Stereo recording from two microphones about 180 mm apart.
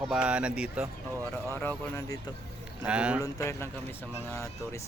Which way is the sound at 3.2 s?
15° left (ahead or behind).